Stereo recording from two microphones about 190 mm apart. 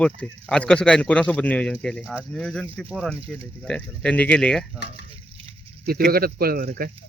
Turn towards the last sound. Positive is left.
turn(degrees=-50)  # may be behind; listen again after turning